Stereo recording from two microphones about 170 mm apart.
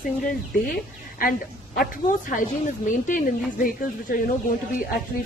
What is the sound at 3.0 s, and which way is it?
Speech, 50° left (ahead or behind).